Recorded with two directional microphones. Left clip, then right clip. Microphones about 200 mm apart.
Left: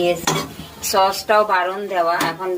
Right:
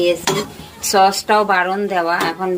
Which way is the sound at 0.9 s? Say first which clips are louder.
Right 3 dB; 30° right (ahead or behind).